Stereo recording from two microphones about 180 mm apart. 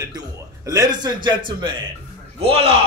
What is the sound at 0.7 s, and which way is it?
A man's voice, 20° right (ahead or behind).